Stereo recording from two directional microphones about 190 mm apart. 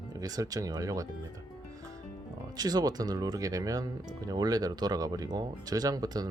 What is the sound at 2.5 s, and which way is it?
Speech, 20° right (ahead or behind).